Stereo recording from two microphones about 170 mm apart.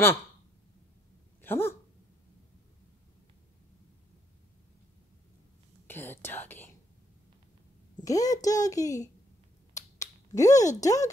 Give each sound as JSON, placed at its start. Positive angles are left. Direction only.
{"t": 1.4, "sound": "speech", "side_deg": 15}
{"t": 5.9, "sound": "whispering", "side_deg": 10}
{"t": 8.0, "sound": "speech", "side_deg": 20}
{"t": 9.8, "sound": "finger snapping", "side_deg": 20}
{"t": 10.8, "sound": "speech", "side_deg": 20}